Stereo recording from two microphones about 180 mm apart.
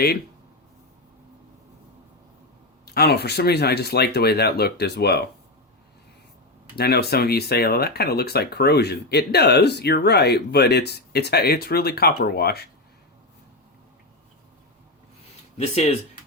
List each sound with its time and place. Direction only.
2.8 s speech: 60° left (ahead or behind)
6.7 s speech: 60° left (ahead or behind)
15.5 s speech: 35° left (ahead or behind)